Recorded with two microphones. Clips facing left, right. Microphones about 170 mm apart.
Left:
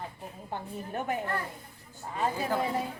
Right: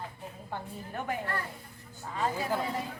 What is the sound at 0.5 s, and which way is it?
Speech, 20° left (ahead or behind).